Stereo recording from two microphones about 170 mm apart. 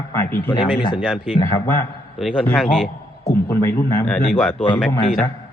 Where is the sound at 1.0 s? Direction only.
5° right (ahead or behind).